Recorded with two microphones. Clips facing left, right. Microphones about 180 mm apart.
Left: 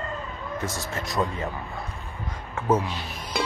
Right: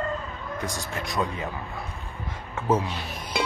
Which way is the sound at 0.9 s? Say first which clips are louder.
Even; centre (ahead or behind).